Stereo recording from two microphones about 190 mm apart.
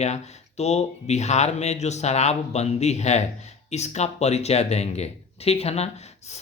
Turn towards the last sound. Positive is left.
turn(degrees=35)  # may be behind; listen again after turning